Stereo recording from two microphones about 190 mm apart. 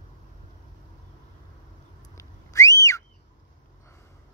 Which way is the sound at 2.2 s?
15° left (ahead or behind).